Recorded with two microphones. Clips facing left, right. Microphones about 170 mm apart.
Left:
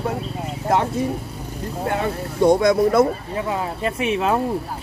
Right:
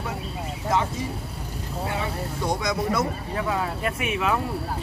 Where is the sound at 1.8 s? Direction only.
55° left (ahead or behind).